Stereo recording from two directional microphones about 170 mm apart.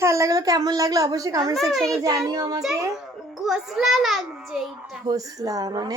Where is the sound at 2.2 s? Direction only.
20° right (ahead or behind).